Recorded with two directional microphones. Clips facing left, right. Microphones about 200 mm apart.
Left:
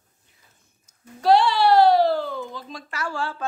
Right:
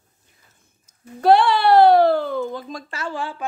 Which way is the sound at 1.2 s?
55° right (ahead or behind).